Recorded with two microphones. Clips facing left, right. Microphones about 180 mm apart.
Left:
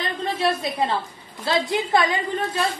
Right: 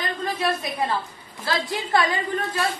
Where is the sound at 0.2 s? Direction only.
25° left (ahead or behind).